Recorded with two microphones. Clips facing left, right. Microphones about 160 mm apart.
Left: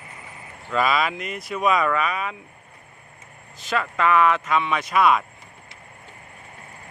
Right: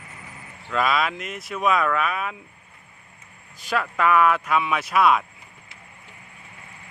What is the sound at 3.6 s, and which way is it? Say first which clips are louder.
Speech: even; 5° right (ahead or behind).